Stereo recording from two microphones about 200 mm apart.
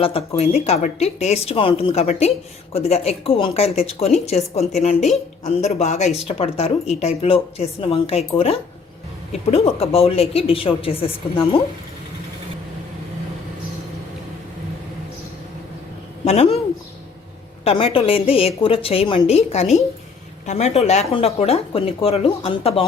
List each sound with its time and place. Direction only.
0.0 s a woman's voice: 30° left (ahead or behind)
16.2 s a woman's voice: 30° left (ahead or behind)
17.6 s a woman's voice: 30° left (ahead or behind)